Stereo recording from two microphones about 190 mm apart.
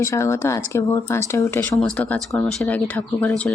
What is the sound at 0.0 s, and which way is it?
Speech, 15° left (ahead or behind).